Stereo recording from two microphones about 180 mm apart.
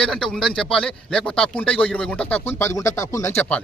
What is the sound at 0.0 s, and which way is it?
Speech, 5° left (ahead or behind).